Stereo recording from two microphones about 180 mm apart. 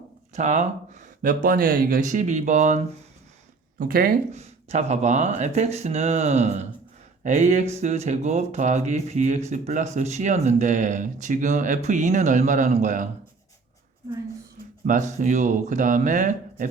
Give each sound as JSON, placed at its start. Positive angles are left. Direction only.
{"t": 0.3, "sound": "speech", "side_deg": -40}
{"t": 3.8, "sound": "speech", "side_deg": -55}
{"t": 4.4, "sound": "speech", "side_deg": -40}
{"t": 14.8, "sound": "speech", "side_deg": -45}